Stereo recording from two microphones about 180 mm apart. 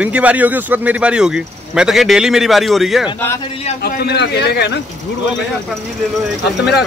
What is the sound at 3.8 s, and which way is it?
A man's voice, 65° left (ahead or behind).